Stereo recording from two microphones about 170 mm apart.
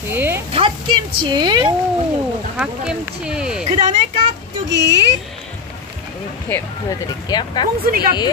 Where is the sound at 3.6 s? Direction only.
40° right (ahead or behind).